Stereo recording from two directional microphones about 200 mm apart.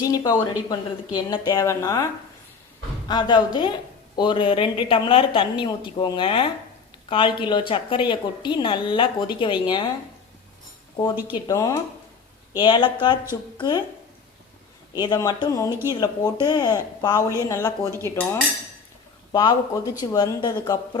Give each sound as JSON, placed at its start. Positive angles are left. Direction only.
{"t": 0.0, "sound": "speech", "side_deg": 20}
{"t": 3.1, "sound": "a woman's voice", "side_deg": 20}
{"t": 10.9, "sound": "a woman's voice", "side_deg": 20}
{"t": 14.9, "sound": "a woman's voice", "side_deg": 20}
{"t": 19.3, "sound": "a woman's voice", "side_deg": 20}